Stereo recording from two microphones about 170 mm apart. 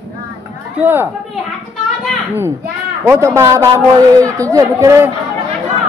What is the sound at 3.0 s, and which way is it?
A man's voice, 15° right (ahead or behind).